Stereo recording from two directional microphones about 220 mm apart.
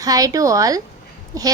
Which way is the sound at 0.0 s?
15° right (ahead or behind).